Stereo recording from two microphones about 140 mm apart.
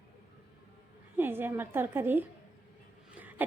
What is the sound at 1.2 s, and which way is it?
A woman's voice, 15° right (ahead or behind).